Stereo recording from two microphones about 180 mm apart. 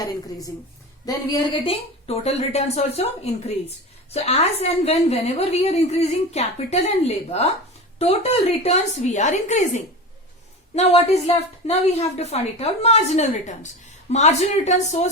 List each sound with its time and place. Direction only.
1.0 s a woman's voice: 20° left (ahead or behind)
2.0 s a woman's voice: 35° left (ahead or behind)
4.1 s a woman's voice: 35° left (ahead or behind)